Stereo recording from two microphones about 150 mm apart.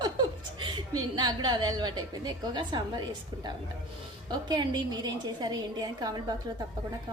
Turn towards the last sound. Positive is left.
turn(degrees=-25)  # may be behind; listen again after turning